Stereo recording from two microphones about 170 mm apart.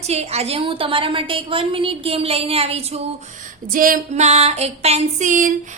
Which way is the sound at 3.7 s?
55° right (ahead or behind).